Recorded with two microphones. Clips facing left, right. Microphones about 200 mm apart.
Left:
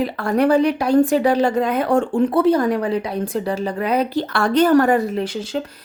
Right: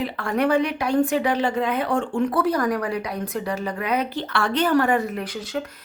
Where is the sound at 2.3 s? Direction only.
25° left (ahead or behind).